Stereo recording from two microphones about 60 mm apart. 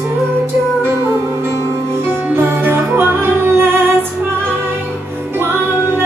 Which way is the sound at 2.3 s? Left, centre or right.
Right.